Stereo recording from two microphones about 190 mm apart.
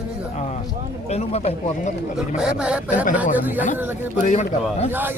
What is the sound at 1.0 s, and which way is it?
Speech, 35° left (ahead or behind).